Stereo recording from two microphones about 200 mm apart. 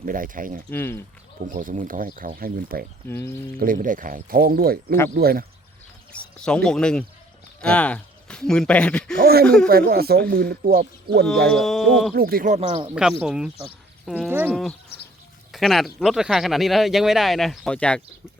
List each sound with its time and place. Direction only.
0.0 s speech: 45° right (ahead or behind)
0.7 s speech: 10° left (ahead or behind)
1.5 s speech: 40° right (ahead or behind)
3.1 s speech: 10° left (ahead or behind)
3.6 s speech: 40° right (ahead or behind)
6.1 s speech: 5° left (ahead or behind)
9.2 s speech: 50° right (ahead or behind)
11.4 s speech: centre (ahead or behind)
12.1 s speech: 50° right (ahead or behind)
12.5 s speech: 30° right (ahead or behind)
12.9 s speech: 5° right (ahead or behind)